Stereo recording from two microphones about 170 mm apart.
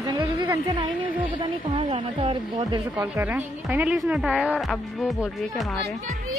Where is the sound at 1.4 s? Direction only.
35° right (ahead or behind).